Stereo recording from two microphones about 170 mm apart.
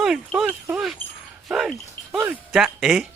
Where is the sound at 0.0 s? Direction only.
Centre (ahead or behind).